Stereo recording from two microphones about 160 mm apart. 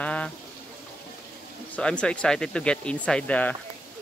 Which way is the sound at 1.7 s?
5° left (ahead or behind).